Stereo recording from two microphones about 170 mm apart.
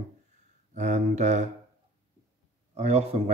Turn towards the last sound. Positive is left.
turn(degrees=-40)  # may be behind; listen again after turning